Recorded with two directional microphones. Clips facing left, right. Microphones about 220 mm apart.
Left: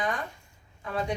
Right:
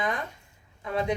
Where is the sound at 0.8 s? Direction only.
20° right (ahead or behind).